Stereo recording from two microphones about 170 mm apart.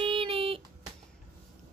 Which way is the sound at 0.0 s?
30° right (ahead or behind).